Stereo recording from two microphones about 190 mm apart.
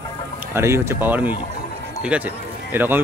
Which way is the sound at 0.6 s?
15° right (ahead or behind).